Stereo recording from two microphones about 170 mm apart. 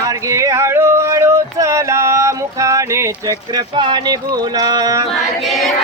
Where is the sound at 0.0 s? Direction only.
20° right (ahead or behind).